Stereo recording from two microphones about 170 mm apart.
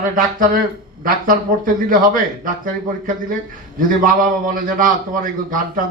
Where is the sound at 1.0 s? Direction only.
55° right (ahead or behind).